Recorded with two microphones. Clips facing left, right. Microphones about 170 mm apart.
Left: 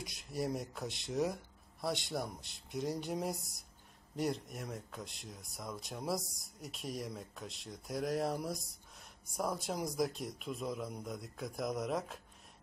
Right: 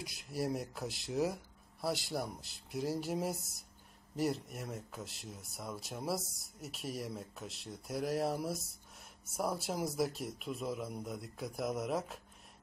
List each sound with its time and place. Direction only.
0.0 s speech: centre (ahead or behind)